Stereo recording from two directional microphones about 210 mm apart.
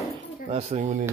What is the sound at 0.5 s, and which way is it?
Speech, 35° right (ahead or behind).